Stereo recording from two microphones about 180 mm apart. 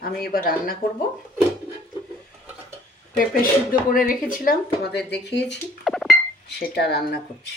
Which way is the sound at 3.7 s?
50° left (ahead or behind).